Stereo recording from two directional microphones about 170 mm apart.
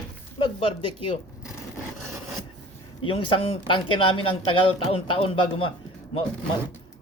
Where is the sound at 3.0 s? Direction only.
30° left (ahead or behind).